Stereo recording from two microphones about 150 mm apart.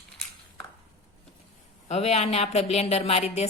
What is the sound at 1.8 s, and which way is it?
A woman's voice, 45° left (ahead or behind).